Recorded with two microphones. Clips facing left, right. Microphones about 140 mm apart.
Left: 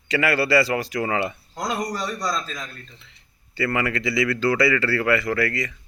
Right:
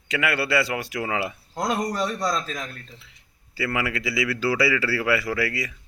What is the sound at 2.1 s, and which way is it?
Speech, 25° right (ahead or behind).